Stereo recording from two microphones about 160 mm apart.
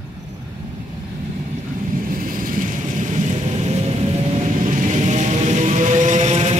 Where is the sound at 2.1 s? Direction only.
60° right (ahead or behind).